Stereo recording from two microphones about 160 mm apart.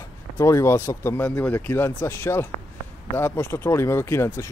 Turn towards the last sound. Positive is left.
turn(degrees=15)  # may be behind; listen again after turning